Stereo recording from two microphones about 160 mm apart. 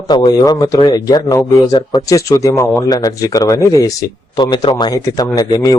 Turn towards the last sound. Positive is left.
turn(degrees=25)  # may be behind; listen again after turning